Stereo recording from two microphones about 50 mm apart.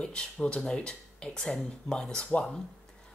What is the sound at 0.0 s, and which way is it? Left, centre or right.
Speech, centre.